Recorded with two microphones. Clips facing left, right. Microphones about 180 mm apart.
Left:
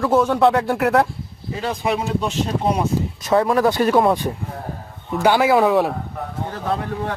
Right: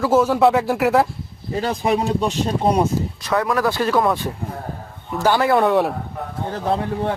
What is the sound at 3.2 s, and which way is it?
Speech, 30° left (ahead or behind).